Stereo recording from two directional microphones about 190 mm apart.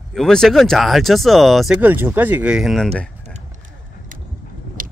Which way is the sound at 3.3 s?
45° right (ahead or behind).